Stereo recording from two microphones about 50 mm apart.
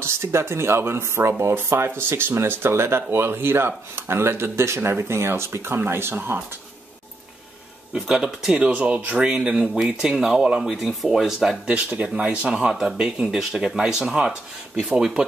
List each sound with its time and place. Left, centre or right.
0.0 s speech: right
7.9 s speech: centre
10.7 s speech: centre
11.6 s speech: right
12.4 s speech: centre